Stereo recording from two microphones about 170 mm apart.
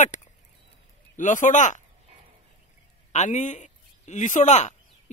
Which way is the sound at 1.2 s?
45° left (ahead or behind).